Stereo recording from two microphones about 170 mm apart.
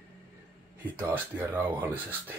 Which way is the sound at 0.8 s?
10° right (ahead or behind).